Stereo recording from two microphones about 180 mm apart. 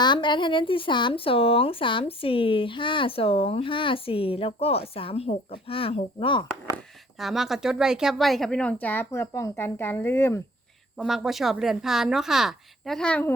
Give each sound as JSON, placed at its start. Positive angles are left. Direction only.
{"t": 0.0, "sound": "speech", "side_deg": 25}
{"t": 7.2, "sound": "speech", "side_deg": 0}
{"t": 10.9, "sound": "a woman's voice", "side_deg": -5}